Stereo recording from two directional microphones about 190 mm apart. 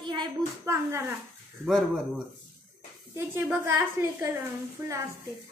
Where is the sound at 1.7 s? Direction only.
Centre (ahead or behind).